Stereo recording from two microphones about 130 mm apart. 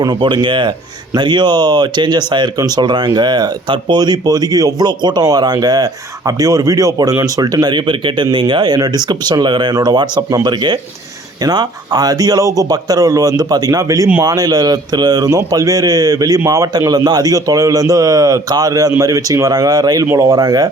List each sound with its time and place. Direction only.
0.0 s a man's voice: 35° right (ahead or behind)